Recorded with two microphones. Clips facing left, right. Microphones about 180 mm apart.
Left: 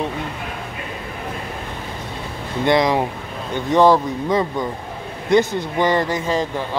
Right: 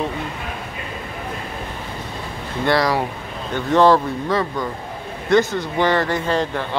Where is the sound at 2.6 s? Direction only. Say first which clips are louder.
Left 2 dB; 20° left (ahead or behind).